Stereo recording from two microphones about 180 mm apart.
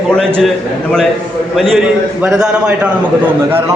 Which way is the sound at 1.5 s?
Centre (ahead or behind).